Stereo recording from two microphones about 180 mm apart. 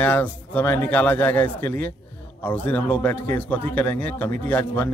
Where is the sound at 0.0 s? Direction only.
10° left (ahead or behind).